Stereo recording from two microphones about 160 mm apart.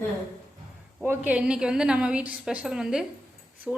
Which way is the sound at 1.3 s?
5° right (ahead or behind).